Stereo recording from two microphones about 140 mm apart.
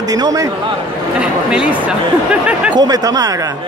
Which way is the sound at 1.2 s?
10° right (ahead or behind).